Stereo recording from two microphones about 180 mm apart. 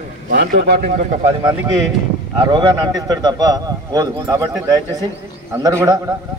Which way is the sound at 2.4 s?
25° right (ahead or behind).